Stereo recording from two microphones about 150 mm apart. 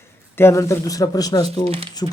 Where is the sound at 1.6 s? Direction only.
40° right (ahead or behind).